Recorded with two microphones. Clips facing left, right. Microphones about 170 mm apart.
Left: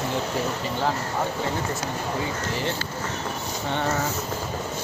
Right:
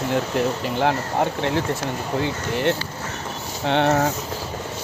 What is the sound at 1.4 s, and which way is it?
Speech, 80° right.